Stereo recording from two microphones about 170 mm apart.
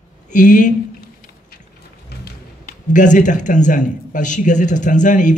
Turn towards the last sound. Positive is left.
turn(degrees=50)  # may be behind; listen again after turning